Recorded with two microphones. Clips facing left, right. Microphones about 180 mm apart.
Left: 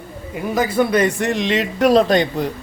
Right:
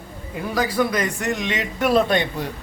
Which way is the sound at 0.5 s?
25° left (ahead or behind).